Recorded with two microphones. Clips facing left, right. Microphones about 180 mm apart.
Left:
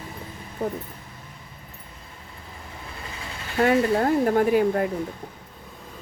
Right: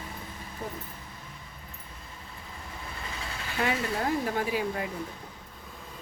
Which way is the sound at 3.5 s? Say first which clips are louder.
Left 10 dB; 50° left (ahead or behind).